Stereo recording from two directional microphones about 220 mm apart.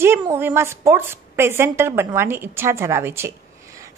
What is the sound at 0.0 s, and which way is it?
A woman's voice, 10° right (ahead or behind).